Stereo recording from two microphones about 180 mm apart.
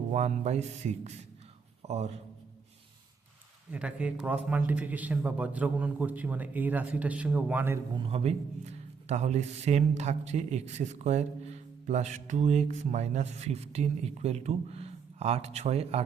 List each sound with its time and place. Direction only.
0.1 s a man's voice: 40° right (ahead or behind)
3.7 s a man's voice: 5° right (ahead or behind)
7.9 s a man's voice: 30° right (ahead or behind)